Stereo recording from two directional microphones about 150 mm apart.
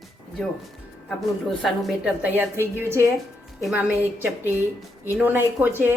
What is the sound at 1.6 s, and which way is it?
Speech, centre (ahead or behind).